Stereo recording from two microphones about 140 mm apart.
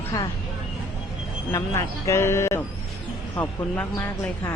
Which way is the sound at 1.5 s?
20° left (ahead or behind).